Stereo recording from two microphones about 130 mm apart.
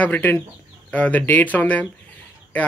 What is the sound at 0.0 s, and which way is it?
Speech, 15° left (ahead or behind).